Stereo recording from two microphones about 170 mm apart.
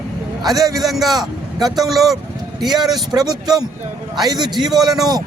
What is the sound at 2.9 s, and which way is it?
A man's voice, 25° right (ahead or behind).